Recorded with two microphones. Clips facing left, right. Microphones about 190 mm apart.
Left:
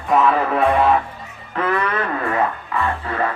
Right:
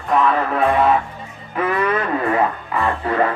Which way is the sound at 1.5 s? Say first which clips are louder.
Right 1 dB; 10° right (ahead or behind).